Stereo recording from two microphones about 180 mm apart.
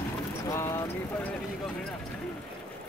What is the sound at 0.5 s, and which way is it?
Vehicle, 20° left (ahead or behind).